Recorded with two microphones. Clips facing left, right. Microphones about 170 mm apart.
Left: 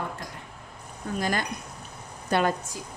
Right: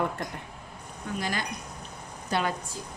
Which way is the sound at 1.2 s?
50° left (ahead or behind).